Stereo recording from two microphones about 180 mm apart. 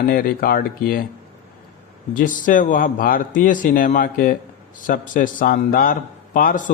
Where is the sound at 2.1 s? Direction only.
45° left (ahead or behind).